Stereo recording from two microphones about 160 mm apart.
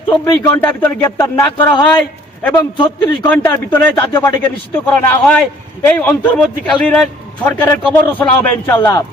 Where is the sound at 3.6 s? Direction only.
15° left (ahead or behind).